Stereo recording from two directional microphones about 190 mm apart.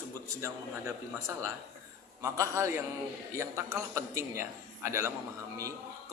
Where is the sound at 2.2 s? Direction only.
15° right (ahead or behind).